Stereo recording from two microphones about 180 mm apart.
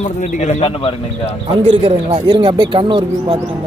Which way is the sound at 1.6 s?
30° right (ahead or behind).